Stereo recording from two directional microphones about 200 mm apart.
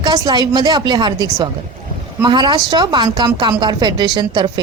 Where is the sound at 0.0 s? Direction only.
20° right (ahead or behind).